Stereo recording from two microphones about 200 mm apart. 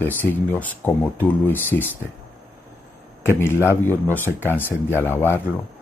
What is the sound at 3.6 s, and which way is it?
Speech, 10° left (ahead or behind).